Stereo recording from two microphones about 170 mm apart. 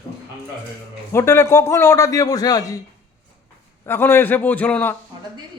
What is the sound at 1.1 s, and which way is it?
A man's voice, 15° left (ahead or behind).